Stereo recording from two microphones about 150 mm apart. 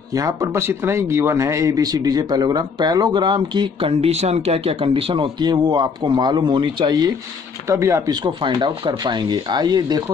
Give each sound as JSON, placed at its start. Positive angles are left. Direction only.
{"t": 0.1, "sound": "speech", "side_deg": -20}